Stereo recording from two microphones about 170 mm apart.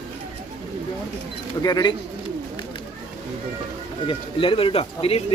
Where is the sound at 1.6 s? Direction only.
25° left (ahead or behind).